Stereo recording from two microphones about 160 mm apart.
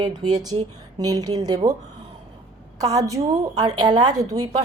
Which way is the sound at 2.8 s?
20° right (ahead or behind).